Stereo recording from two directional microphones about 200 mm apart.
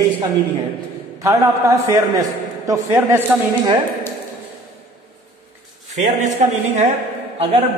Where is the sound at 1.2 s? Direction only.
15° right (ahead or behind).